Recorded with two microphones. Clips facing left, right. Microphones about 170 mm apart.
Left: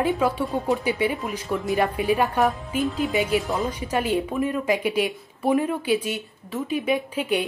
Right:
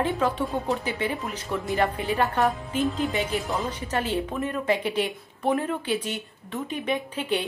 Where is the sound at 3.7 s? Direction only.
10° left (ahead or behind).